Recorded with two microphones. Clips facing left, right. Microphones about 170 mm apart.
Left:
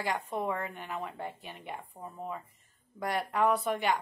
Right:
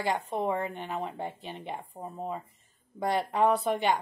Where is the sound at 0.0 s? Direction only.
25° right (ahead or behind).